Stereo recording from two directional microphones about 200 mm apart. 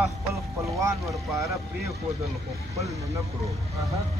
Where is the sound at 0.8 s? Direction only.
15° right (ahead or behind).